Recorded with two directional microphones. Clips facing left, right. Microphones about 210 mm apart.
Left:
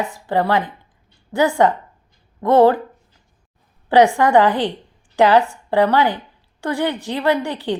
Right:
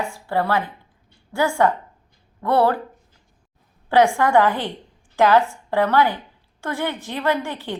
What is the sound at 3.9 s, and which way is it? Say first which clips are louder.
A woman's voice: left 3 dB; 15° left (ahead or behind).